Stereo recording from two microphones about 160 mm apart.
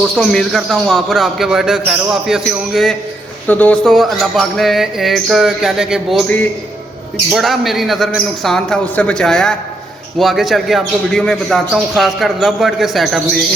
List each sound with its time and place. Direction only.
0.0 s speech: centre (ahead or behind)
3.4 s speech: 10° left (ahead or behind)